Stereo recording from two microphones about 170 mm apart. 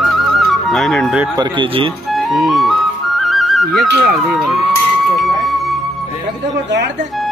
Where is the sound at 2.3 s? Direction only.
Centre (ahead or behind).